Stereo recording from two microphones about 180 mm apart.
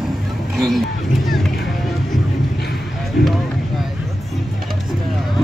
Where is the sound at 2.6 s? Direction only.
60° left (ahead or behind).